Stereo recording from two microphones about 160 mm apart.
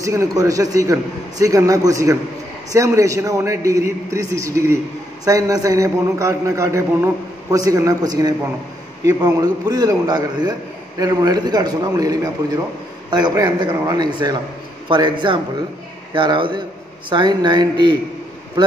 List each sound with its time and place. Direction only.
0.0 s a man's voice: 20° right (ahead or behind)